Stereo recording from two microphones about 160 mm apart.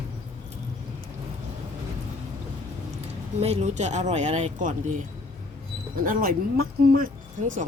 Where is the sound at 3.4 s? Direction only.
45° right (ahead or behind).